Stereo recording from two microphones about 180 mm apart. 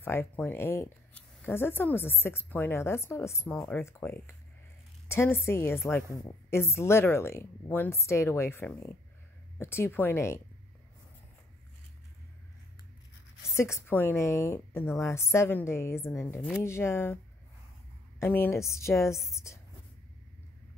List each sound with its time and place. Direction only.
0.0 s speech: 10° left (ahead or behind)
13.6 s speech: 15° left (ahead or behind)
18.2 s speech: 10° left (ahead or behind)